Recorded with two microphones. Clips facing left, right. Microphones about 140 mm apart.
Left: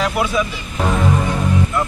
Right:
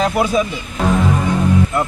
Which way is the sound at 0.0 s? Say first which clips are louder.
Right 3 dB; 40° right (ahead or behind).